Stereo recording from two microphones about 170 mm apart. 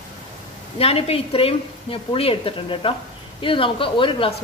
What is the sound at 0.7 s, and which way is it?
Speech, 35° left (ahead or behind).